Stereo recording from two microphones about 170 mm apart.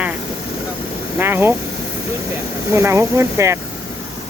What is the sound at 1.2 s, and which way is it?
Speech, 15° right (ahead or behind).